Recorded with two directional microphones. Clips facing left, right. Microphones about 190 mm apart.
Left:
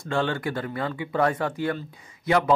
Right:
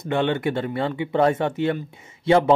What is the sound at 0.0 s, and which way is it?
A man's voice, 20° right (ahead or behind).